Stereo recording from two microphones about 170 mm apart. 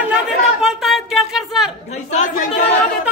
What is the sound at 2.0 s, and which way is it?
Speech, 45° left (ahead or behind).